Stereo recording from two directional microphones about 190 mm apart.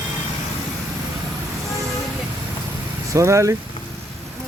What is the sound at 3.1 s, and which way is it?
Speech, 15° right (ahead or behind).